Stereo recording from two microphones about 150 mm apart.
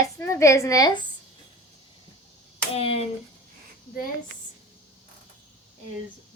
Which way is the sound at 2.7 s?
40° left (ahead or behind).